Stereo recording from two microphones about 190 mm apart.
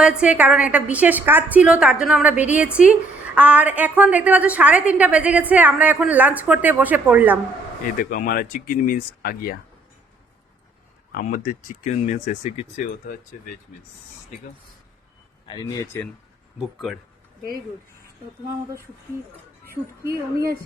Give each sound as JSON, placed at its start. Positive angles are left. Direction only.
{"t": 0.0, "sound": "a woman's voice", "side_deg": -5}
{"t": 7.9, "sound": "speech", "side_deg": 45}
{"t": 11.1, "sound": "speech", "side_deg": 45}
{"t": 15.4, "sound": "speech", "side_deg": 20}
{"t": 16.6, "sound": "speech", "side_deg": 0}
{"t": 18.4, "sound": "a woman's voice", "side_deg": -15}